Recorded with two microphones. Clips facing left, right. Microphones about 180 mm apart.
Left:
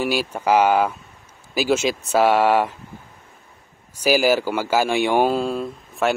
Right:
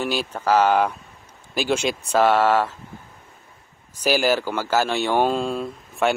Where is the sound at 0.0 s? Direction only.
10° left (ahead or behind).